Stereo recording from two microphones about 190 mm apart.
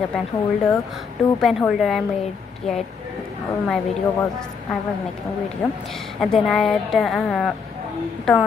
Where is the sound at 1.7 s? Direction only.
Centre (ahead or behind).